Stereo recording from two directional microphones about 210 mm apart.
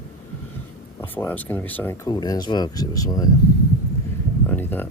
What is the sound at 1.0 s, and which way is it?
Speech, 10° left (ahead or behind).